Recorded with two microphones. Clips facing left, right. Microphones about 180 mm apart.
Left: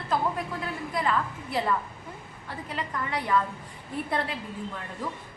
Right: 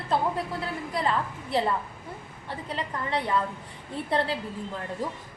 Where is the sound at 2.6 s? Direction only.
30° right (ahead or behind).